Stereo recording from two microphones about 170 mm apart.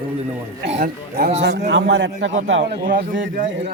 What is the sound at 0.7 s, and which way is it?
Speech, 65° right (ahead or behind).